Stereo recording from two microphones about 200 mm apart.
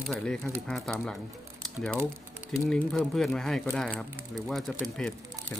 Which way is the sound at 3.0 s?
Centre (ahead or behind).